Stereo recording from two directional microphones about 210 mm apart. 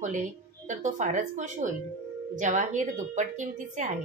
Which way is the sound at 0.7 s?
35° right (ahead or behind).